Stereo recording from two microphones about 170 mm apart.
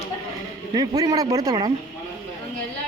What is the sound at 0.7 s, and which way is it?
Speech, 25° right (ahead or behind).